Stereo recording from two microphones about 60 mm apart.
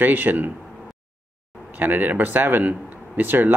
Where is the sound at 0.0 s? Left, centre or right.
Right.